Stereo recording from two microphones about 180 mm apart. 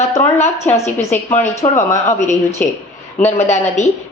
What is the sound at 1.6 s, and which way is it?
Speech, 25° left (ahead or behind).